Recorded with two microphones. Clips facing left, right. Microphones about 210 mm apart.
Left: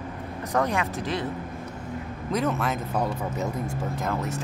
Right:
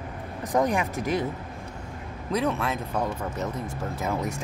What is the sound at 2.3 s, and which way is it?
Speech, centre (ahead or behind).